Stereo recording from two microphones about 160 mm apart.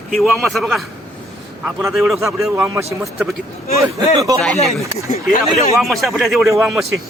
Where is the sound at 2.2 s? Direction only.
20° right (ahead or behind).